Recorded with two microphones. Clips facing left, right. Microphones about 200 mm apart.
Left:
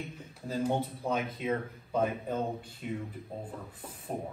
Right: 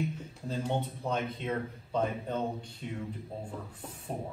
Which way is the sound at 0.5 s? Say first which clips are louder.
Left 2 dB; 5° left (ahead or behind).